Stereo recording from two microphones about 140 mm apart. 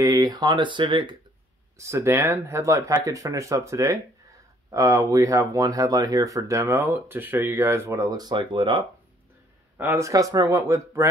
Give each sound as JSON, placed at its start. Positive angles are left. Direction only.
{"t": 0.0, "sound": "speech", "side_deg": -25}
{"t": 1.8, "sound": "speech", "side_deg": -20}
{"t": 9.8, "sound": "speech", "side_deg": -15}